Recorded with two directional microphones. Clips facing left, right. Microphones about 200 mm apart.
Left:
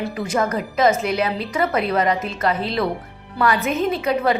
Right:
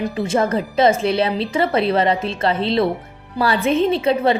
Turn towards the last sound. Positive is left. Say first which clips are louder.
# right 3 dB
turn(degrees=-30)  # may be behind; listen again after turning